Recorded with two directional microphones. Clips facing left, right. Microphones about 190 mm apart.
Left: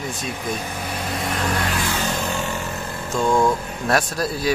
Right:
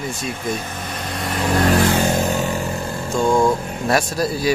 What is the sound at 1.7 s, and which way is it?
Vehicle, 55° right (ahead or behind).